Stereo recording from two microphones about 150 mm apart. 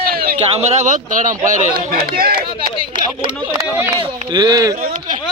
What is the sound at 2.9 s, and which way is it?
Speech, 30° right (ahead or behind).